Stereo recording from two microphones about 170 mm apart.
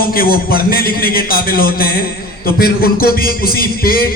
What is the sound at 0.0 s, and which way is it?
A man's voice, 60° left (ahead or behind).